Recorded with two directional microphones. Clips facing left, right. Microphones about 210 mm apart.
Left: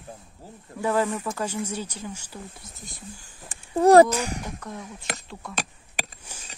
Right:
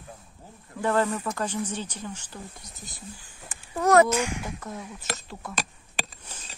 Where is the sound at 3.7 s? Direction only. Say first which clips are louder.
Left 5 dB; 30° left (ahead or behind).